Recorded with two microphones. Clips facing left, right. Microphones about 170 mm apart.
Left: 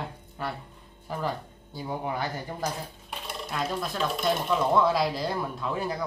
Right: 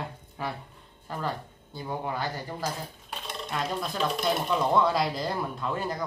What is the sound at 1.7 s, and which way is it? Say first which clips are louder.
Speech: left 1 dB; 15° left (ahead or behind).